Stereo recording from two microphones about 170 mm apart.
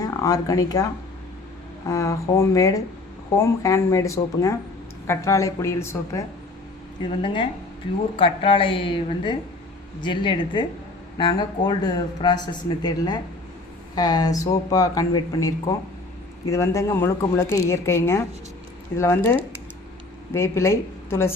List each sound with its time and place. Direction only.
0.0 s speech: 20° left (ahead or behind)
1.9 s speech: 20° left (ahead or behind)
8.1 s a woman's voice: 30° left (ahead or behind); by 21.3 s 15° left (ahead or behind)